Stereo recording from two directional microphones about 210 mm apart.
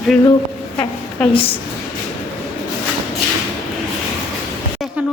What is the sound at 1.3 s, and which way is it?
Speech, 25° left (ahead or behind).